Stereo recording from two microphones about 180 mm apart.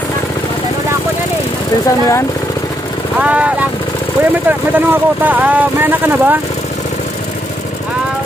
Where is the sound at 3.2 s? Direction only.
5° right (ahead or behind).